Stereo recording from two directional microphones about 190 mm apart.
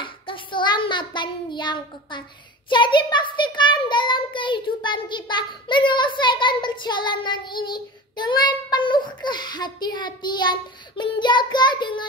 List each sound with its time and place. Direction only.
0.0 s child singing: 25° left (ahead or behind)
2.7 s a child's voice: 25° left (ahead or behind)